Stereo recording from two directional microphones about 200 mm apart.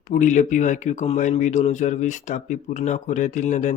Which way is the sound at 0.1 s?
40° left (ahead or behind).